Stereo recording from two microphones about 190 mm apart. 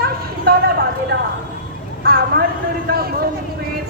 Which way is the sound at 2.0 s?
55° right (ahead or behind).